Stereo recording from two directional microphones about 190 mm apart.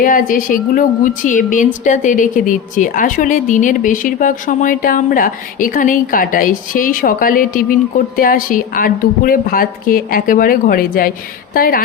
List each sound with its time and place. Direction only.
0.0 s a woman's voice: 45° left (ahead or behind)